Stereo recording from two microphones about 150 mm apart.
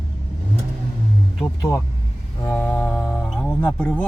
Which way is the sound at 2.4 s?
15° left (ahead or behind).